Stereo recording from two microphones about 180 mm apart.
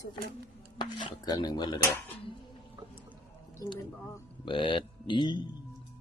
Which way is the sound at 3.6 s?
20° left (ahead or behind).